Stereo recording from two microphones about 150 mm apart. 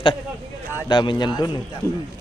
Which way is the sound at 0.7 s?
30° left (ahead or behind).